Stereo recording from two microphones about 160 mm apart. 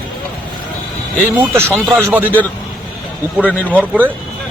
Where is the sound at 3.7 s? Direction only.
10° left (ahead or behind).